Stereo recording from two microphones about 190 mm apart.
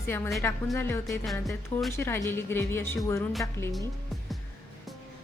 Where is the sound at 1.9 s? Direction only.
15° left (ahead or behind).